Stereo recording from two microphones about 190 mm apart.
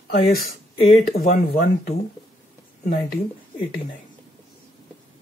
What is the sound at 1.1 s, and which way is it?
Speech, 30° left (ahead or behind).